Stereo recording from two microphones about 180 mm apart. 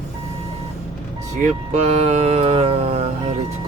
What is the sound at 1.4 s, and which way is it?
Speech, 40° right (ahead or behind).